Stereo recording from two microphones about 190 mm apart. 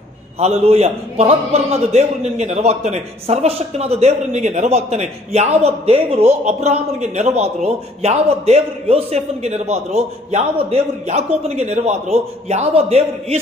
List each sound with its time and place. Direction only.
0.4 s a man's voice: 35° right (ahead or behind)